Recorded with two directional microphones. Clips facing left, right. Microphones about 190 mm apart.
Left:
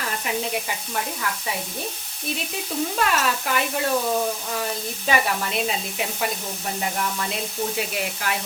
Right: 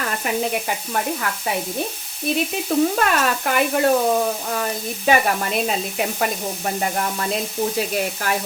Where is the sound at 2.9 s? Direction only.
50° right (ahead or behind).